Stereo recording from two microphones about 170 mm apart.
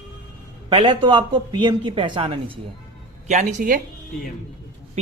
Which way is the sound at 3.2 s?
45° right (ahead or behind).